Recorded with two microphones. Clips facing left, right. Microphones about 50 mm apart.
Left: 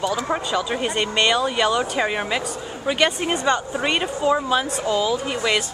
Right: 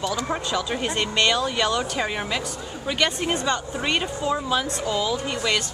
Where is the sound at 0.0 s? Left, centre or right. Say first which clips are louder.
Left 3 dB; centre.